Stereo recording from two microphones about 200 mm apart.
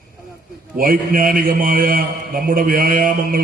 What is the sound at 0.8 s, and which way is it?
A man's voice, 45° right (ahead or behind).